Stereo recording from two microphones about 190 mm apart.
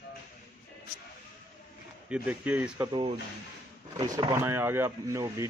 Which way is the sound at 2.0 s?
5° right (ahead or behind).